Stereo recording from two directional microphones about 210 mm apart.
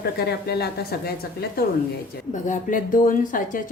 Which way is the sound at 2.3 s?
40° left (ahead or behind).